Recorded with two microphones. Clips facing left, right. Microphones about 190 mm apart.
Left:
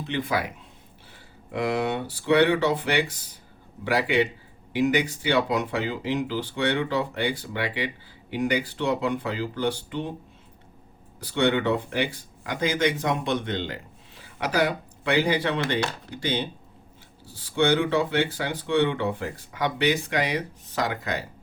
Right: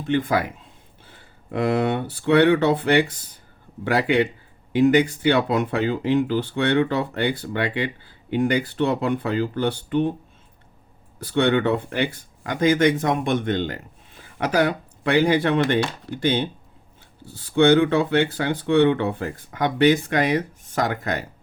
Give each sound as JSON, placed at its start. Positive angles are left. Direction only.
{"t": 1.0, "sound": "speech", "side_deg": -55}
{"t": 11.3, "sound": "speech", "side_deg": -55}